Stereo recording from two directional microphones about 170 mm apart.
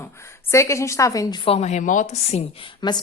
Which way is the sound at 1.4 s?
40° left (ahead or behind).